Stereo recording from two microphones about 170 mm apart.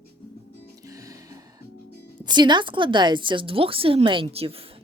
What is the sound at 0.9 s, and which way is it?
Music, 20° right (ahead or behind).